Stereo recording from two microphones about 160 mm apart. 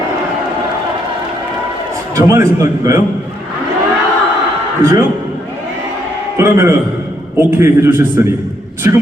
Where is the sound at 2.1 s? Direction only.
20° right (ahead or behind).